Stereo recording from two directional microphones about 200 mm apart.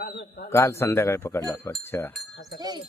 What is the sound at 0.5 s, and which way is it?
Speech, 15° left (ahead or behind).